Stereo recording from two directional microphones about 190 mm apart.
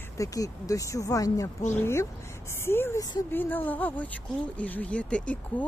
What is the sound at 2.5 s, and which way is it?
Speech, 15° left (ahead or behind).